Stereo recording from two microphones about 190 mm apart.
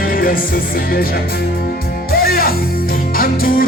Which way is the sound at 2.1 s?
50° left (ahead or behind).